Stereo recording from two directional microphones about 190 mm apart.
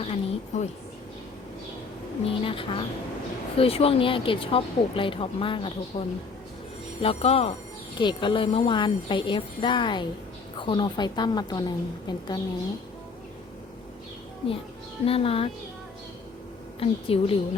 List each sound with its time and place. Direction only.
0.0 s a woman's voice: 35° left (ahead or behind)
2.2 s a woman's voice: 30° left (ahead or behind)
15.0 s speech: 30° left (ahead or behind)
16.8 s a woman's voice: 30° left (ahead or behind)